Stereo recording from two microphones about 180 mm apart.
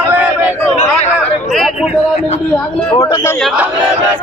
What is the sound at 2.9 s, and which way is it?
Speech, 30° left (ahead or behind).